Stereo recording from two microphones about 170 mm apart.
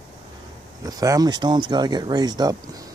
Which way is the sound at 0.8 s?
20° right (ahead or behind).